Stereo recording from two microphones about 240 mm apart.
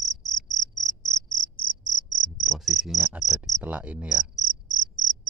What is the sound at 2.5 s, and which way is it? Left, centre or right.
Cricket, centre.